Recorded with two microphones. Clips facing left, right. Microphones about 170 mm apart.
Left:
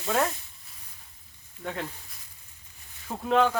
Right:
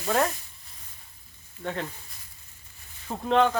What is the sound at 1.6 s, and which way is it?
Speech, centre (ahead or behind).